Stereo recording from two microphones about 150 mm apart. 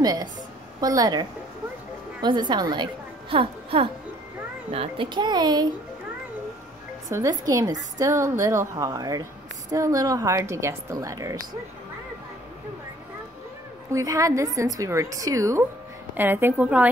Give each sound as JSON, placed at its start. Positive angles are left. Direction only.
{"t": 0.0, "sound": "a woman's voice", "side_deg": -25}
{"t": 2.2, "sound": "a woman's voice", "side_deg": -30}
{"t": 7.1, "sound": "a woman's voice", "side_deg": -20}
{"t": 13.9, "sound": "a woman's voice", "side_deg": -20}